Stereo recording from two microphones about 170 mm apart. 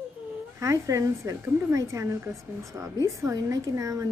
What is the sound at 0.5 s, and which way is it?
A woman's voice, 20° right (ahead or behind).